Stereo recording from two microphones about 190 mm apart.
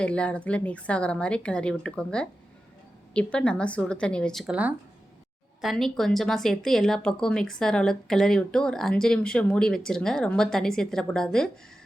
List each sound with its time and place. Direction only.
0.0 s speech: 5° left (ahead or behind)